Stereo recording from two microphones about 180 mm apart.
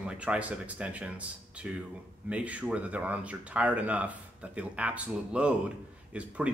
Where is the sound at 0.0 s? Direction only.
5° right (ahead or behind).